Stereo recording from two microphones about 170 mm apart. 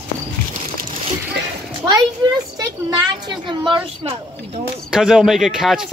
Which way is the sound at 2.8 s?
25° right (ahead or behind).